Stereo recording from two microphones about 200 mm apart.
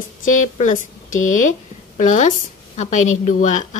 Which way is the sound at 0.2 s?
40° left (ahead or behind).